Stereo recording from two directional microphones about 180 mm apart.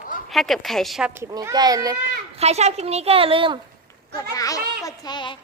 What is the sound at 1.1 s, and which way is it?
Speech, 15° right (ahead or behind).